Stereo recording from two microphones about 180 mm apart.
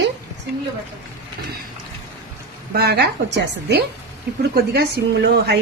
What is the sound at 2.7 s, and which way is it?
A woman's voice, 65° right (ahead or behind).